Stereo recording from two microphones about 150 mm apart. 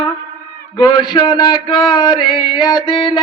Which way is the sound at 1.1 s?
30° left (ahead or behind).